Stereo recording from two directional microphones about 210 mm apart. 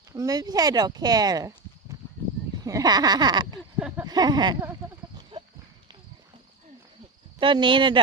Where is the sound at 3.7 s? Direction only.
10° right (ahead or behind); by 5.5 s 25° right (ahead or behind).